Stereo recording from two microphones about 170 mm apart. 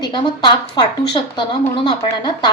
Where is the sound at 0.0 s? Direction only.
25° left (ahead or behind).